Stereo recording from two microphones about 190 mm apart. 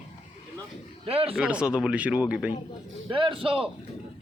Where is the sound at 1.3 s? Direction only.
5° right (ahead or behind).